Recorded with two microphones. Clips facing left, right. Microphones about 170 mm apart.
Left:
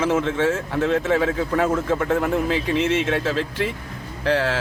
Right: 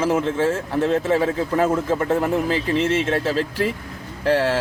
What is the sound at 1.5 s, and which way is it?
Speech, 10° right (ahead or behind).